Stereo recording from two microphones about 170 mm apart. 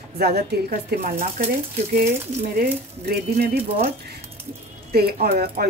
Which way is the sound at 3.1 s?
65° right (ahead or behind).